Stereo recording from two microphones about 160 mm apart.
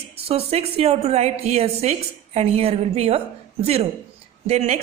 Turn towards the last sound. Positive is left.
turn(degrees=-40)  # may be behind; listen again after turning